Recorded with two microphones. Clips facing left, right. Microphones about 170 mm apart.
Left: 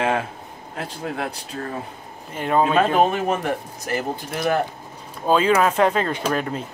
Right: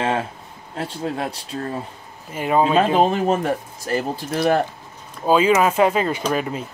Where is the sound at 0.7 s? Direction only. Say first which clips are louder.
Right 3 dB; 30° right (ahead or behind).